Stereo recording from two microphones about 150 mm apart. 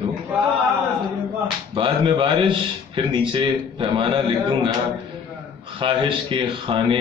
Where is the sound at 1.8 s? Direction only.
35° right (ahead or behind).